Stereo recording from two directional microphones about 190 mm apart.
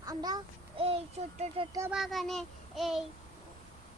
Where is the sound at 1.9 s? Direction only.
Centre (ahead or behind).